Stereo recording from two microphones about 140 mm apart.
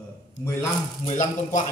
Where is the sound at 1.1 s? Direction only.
60° left (ahead or behind).